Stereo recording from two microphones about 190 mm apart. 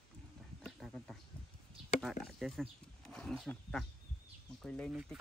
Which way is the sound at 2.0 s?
Centre (ahead or behind).